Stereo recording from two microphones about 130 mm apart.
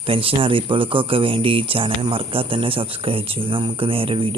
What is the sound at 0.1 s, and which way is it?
Speech, 45° right (ahead or behind).